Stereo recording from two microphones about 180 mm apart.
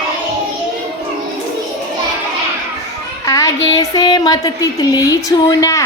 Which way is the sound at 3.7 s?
20° left (ahead or behind).